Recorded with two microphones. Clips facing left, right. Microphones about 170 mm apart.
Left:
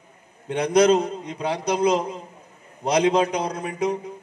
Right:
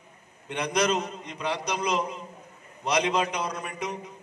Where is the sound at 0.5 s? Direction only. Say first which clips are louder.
Left 9 dB; 50° left (ahead or behind).